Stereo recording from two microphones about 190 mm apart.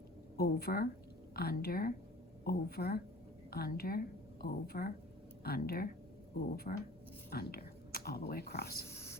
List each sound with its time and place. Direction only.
0.3 s a woman's voice: 55° left (ahead or behind)
8.9 s speech: 15° left (ahead or behind)